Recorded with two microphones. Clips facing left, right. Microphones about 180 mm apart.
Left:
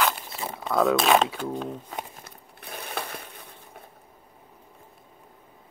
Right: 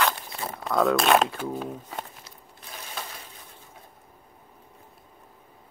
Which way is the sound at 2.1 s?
60° left (ahead or behind).